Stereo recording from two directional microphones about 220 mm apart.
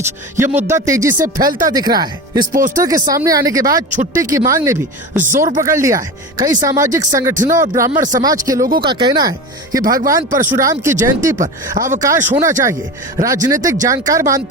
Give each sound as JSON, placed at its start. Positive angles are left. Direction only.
{"t": 0.7, "sound": "speech", "side_deg": -15}
{"t": 2.5, "sound": "speech", "side_deg": -40}
{"t": 2.7, "sound": "speech", "side_deg": -15}
{"t": 3.9, "sound": "speech", "side_deg": -35}
{"t": 4.2, "sound": "speech", "side_deg": -15}
{"t": 11.3, "sound": "speech", "side_deg": -35}
{"t": 11.8, "sound": "speech", "side_deg": -15}